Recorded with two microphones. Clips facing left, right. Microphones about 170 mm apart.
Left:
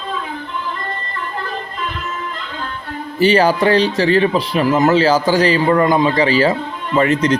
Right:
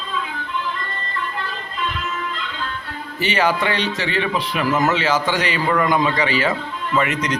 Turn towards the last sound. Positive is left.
turn(degrees=30)  # may be behind; listen again after turning